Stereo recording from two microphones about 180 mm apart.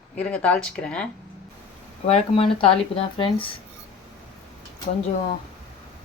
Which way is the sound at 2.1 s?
30° left (ahead or behind).